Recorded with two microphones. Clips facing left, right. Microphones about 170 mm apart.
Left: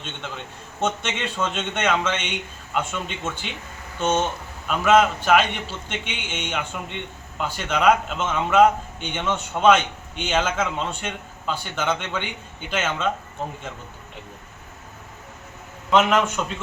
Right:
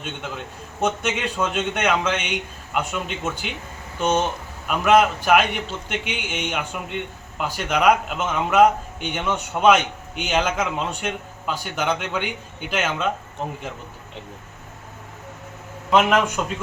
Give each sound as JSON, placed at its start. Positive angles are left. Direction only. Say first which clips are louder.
{"t": 0.0, "sound": "a man's voice", "louder": "right 3 dB", "side_deg": -10}
{"t": 15.9, "sound": "a man's voice", "louder": "right 1 dB", "side_deg": -5}